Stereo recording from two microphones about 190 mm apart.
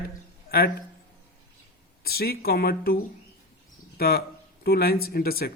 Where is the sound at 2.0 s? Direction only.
55° left (ahead or behind).